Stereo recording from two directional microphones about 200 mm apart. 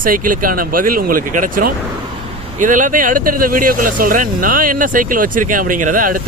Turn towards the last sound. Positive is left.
turn(degrees=-40)  # may be behind; listen again after turning